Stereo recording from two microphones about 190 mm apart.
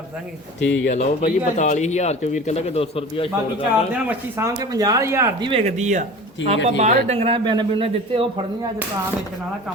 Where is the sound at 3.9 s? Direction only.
5° right (ahead or behind).